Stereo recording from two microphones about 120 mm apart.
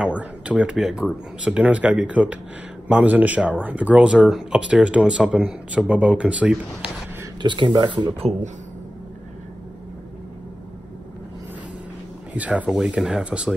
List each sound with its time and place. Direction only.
0.0 s speech: 10° right (ahead or behind)
7.4 s speech: 40° right (ahead or behind)
8.2 s speech: 65° right (ahead or behind)
12.4 s speech: 10° right (ahead or behind)